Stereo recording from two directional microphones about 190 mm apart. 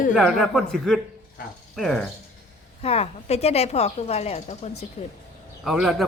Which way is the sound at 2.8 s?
30° left (ahead or behind).